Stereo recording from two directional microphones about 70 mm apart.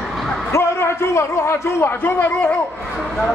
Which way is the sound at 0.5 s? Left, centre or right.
Left.